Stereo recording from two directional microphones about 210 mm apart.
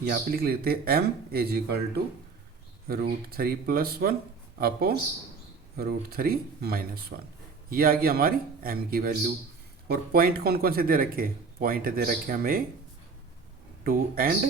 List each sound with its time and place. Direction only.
0.0 s speech: 50° right (ahead or behind)
2.8 s speech: 45° right (ahead or behind)
13.8 s speech: 45° right (ahead or behind)